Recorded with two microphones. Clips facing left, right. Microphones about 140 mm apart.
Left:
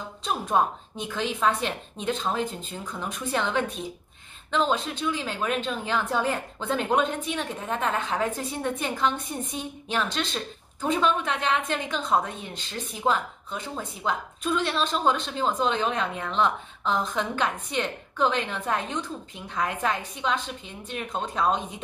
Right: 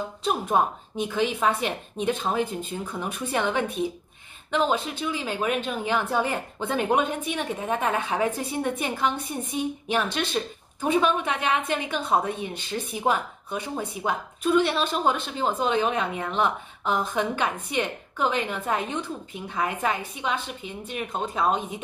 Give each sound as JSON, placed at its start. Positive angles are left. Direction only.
{"t": 0.2, "sound": "a woman's voice", "side_deg": -10}